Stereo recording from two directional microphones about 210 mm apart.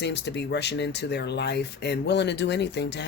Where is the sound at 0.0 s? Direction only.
55° left (ahead or behind).